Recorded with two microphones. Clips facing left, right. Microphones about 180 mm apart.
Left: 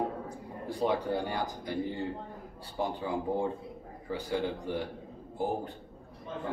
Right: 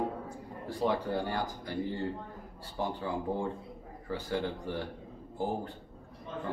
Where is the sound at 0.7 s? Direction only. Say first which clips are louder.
Left 1 dB; 15° left (ahead or behind).